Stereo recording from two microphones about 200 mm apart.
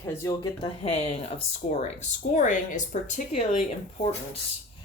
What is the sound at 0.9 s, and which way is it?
Speech, 30° left (ahead or behind).